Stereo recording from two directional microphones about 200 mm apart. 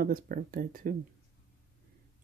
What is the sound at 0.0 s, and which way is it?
Speech, 45° right (ahead or behind).